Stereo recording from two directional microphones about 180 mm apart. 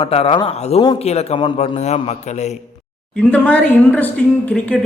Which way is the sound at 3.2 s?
5° left (ahead or behind).